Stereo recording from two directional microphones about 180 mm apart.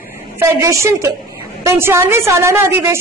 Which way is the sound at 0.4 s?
15° right (ahead or behind).